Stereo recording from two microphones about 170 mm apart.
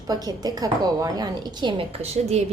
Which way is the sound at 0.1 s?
20° right (ahead or behind).